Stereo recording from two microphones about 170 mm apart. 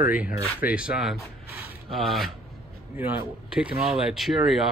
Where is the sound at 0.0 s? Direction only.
10° right (ahead or behind).